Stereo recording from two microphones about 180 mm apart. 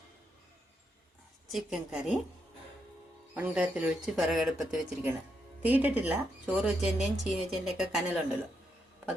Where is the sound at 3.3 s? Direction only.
5° right (ahead or behind).